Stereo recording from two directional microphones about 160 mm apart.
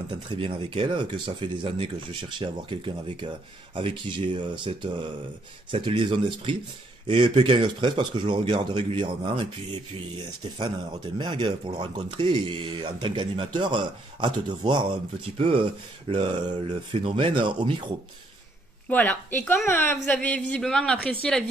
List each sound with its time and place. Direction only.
0.4 s speech: 30° right (ahead or behind)
10.6 s speech: 30° right (ahead or behind)
18.9 s a woman's voice: 10° left (ahead or behind)